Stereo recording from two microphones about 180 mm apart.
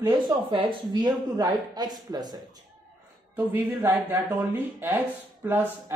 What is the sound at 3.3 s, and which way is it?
Speech, 10° right (ahead or behind).